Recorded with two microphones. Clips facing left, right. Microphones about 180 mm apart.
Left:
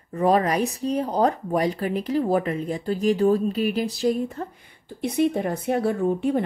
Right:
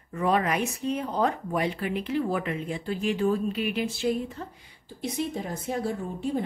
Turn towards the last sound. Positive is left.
turn(degrees=65)  # may be behind; listen again after turning